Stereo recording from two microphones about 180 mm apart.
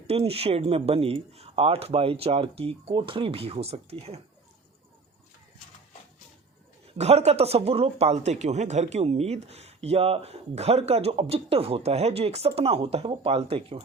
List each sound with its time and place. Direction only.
0.1 s speech: 35° right (ahead or behind)
6.9 s speech: 35° right (ahead or behind)